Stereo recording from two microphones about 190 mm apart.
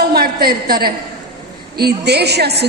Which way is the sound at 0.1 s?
55° right (ahead or behind).